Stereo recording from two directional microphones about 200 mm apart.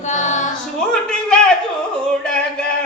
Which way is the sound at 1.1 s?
5° left (ahead or behind).